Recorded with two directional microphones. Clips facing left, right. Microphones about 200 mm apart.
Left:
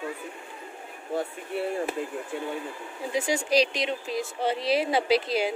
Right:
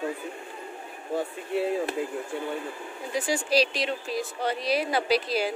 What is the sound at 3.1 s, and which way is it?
Speech, 20° left (ahead or behind).